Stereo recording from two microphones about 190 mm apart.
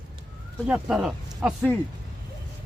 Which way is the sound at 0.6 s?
5° right (ahead or behind).